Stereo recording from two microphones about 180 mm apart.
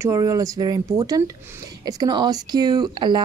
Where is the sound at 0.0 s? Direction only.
15° right (ahead or behind).